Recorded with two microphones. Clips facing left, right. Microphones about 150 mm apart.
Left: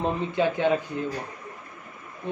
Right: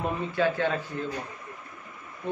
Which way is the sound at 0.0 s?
20° left (ahead or behind).